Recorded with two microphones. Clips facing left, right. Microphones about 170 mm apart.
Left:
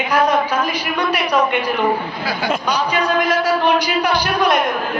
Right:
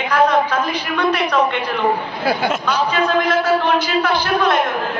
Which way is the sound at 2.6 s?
15° left (ahead or behind).